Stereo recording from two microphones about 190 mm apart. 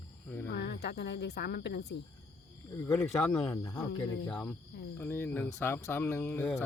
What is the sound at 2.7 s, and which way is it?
Speech, 15° left (ahead or behind).